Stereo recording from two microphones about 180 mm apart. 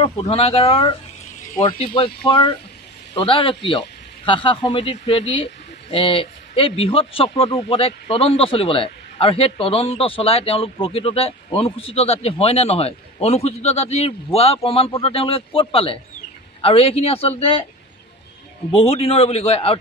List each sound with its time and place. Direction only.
0.0 s a man's voice: 30° left (ahead or behind)
18.7 s a man's voice: 35° left (ahead or behind)